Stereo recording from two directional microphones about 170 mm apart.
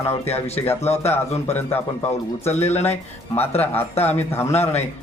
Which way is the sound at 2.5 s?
40° left (ahead or behind).